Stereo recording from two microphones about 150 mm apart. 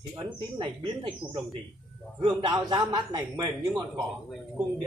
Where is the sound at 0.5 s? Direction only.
35° right (ahead or behind).